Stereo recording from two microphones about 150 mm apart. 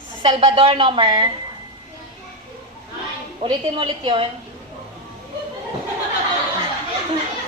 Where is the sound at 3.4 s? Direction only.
35° right (ahead or behind).